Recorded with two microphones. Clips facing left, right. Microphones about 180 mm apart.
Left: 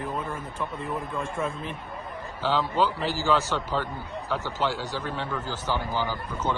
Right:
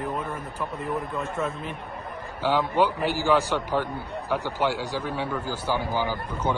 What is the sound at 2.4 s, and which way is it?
A man's voice, 15° right (ahead or behind).